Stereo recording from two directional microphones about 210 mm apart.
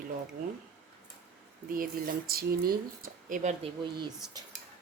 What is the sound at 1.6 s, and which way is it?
Speech, 40° right (ahead or behind).